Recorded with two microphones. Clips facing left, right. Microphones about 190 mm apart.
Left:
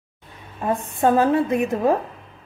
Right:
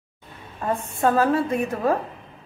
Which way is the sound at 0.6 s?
20° left (ahead or behind).